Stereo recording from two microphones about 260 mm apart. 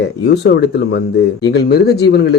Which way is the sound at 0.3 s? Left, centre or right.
Left.